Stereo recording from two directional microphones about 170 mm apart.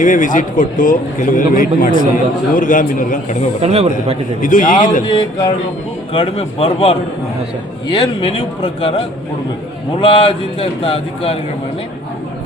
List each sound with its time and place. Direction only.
0.0 s a man's voice: 50° left (ahead or behind)
3.6 s a man's voice: 40° right (ahead or behind)
4.4 s a man's voice: 50° left (ahead or behind)
5.0 s speech: 25° left (ahead or behind)